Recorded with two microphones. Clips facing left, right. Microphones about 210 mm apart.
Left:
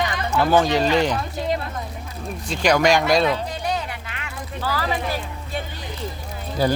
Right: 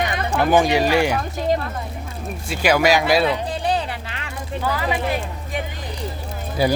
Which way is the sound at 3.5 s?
30° right (ahead or behind).